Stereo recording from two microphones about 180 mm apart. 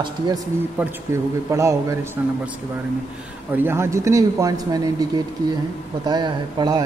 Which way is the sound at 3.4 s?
10° right (ahead or behind).